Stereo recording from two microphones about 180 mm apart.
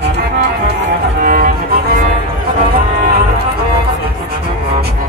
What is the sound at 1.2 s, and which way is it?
Music, 50° right (ahead or behind).